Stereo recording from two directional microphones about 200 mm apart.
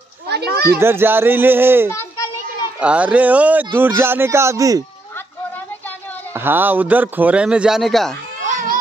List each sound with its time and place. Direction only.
0.3 s a child's voice: 55° right (ahead or behind)
0.7 s a man's voice: 10° right (ahead or behind)
1.9 s children playing: 15° left (ahead or behind)
2.8 s a man's voice: 5° right (ahead or behind)
5.1 s a sound: 10° left (ahead or behind)
6.3 s a man's voice: 10° right (ahead or behind)
8.5 s baby cry: 40° right (ahead or behind)